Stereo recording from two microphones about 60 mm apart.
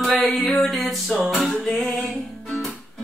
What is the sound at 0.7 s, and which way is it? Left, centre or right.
Female singing, centre.